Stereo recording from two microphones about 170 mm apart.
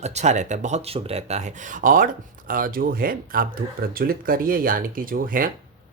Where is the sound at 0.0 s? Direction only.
40° right (ahead or behind).